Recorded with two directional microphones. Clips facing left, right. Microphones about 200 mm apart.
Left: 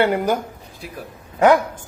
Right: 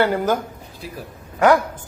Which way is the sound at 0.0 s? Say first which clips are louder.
Even; 20° left (ahead or behind).